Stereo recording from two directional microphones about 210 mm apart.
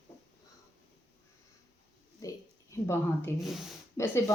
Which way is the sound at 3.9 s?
15° left (ahead or behind).